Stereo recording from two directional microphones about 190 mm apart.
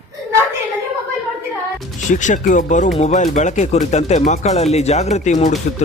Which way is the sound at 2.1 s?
40° left (ahead or behind).